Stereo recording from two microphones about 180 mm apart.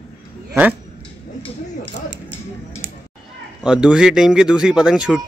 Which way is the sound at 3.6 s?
5° right (ahead or behind).